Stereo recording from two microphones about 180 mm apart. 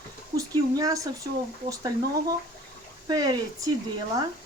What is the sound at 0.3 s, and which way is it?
Speech, 20° right (ahead or behind).